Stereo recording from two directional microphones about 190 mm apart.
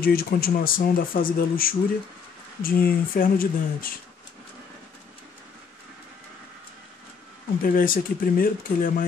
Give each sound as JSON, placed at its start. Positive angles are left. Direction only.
{"t": 0.0, "sound": "speech", "side_deg": 50}
{"t": 7.6, "sound": "speech", "side_deg": 50}